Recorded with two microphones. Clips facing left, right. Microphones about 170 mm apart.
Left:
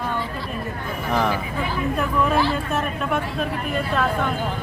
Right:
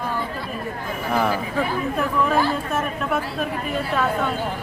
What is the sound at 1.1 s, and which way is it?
Speech, 5° right (ahead or behind).